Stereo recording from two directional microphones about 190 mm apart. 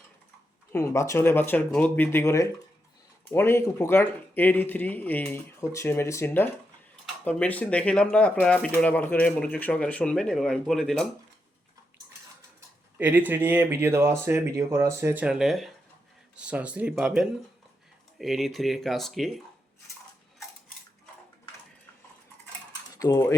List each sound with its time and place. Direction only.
0.7 s speech: 15° left (ahead or behind)
12.5 s speech: 10° right (ahead or behind)
23.0 s speech: 15° left (ahead or behind)